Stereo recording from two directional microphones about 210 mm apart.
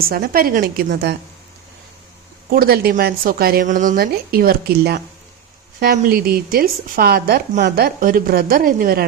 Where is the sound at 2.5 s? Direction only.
45° right (ahead or behind).